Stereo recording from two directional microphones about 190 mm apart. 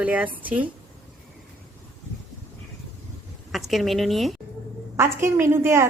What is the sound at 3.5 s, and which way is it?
Speech, centre (ahead or behind).